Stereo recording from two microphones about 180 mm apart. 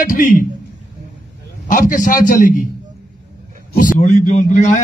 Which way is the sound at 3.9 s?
40° left (ahead or behind).